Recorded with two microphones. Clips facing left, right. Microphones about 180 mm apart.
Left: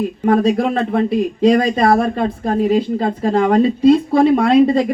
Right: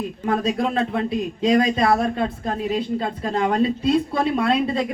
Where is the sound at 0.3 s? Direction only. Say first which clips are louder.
Left 7 dB; 55° left (ahead or behind).